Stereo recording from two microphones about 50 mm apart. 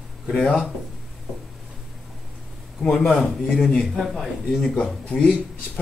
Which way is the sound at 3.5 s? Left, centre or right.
Centre.